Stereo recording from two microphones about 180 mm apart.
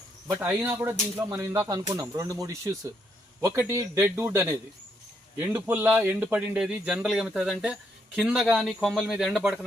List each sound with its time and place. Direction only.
0.3 s a man's voice: 15° right (ahead or behind)